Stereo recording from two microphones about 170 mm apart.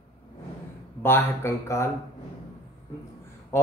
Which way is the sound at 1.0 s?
15° left (ahead or behind).